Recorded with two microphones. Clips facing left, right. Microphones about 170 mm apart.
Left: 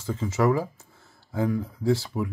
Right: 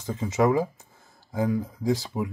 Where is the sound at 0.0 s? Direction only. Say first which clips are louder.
Right 1 dB; 15° right (ahead or behind).